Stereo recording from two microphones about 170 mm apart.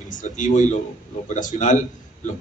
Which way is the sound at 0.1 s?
45° left (ahead or behind).